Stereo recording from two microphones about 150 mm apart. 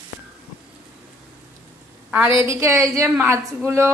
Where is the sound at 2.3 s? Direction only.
20° right (ahead or behind).